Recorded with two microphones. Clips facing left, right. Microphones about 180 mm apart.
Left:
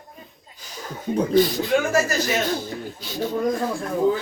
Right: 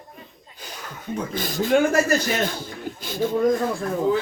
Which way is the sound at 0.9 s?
35° left (ahead or behind).